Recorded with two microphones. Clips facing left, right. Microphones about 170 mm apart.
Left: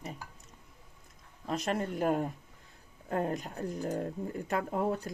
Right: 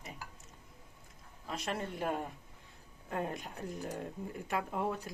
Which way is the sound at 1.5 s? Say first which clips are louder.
Left 6 dB; 40° left (ahead or behind).